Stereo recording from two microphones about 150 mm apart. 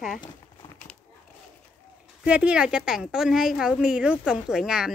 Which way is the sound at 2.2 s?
5° right (ahead or behind).